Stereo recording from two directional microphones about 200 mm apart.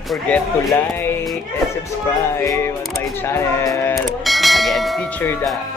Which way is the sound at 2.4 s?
15° left (ahead or behind).